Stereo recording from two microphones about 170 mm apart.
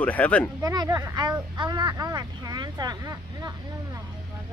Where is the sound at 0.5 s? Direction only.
20° right (ahead or behind).